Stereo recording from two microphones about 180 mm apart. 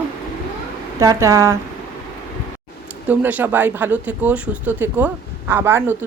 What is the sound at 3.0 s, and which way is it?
Speech, 10° right (ahead or behind).